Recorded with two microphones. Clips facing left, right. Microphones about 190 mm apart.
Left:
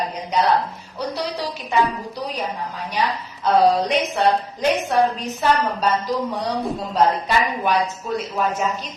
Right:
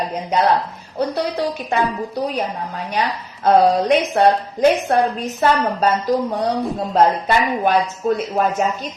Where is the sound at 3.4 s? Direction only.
55° right (ahead or behind).